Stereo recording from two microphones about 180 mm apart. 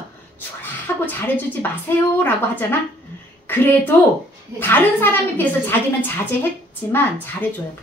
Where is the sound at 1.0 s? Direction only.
10° left (ahead or behind).